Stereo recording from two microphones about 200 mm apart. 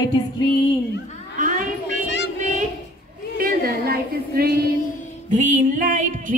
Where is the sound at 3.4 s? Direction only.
50° right (ahead or behind).